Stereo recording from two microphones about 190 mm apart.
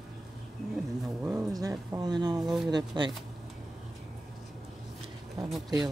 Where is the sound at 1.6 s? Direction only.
15° right (ahead or behind).